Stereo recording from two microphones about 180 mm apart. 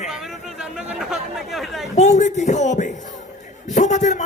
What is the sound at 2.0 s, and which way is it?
A man's voice, 40° left (ahead or behind).